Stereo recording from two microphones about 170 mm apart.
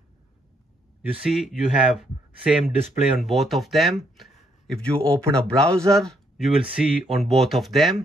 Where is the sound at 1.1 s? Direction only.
5° right (ahead or behind).